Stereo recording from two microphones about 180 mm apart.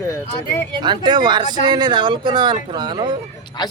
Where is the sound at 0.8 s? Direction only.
25° right (ahead or behind).